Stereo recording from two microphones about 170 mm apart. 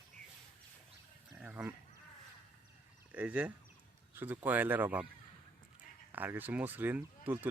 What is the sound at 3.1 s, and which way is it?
Speech, 10° right (ahead or behind).